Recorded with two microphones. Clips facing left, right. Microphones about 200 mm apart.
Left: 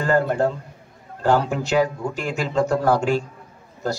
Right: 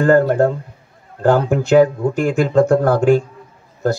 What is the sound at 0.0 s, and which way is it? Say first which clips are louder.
Speech: right 7 dB; 50° right (ahead or behind).